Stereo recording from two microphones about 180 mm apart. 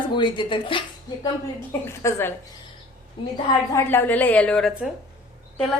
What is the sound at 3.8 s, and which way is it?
Speech, 10° left (ahead or behind).